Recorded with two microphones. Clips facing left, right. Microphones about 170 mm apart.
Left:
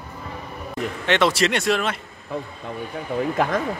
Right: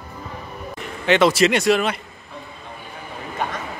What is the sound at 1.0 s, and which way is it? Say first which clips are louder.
Speech: right 4 dB; centre (ahead or behind).